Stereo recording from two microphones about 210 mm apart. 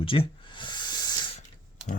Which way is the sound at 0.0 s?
25° left (ahead or behind).